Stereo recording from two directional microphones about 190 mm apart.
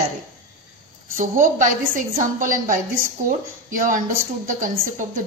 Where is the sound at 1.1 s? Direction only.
45° right (ahead or behind).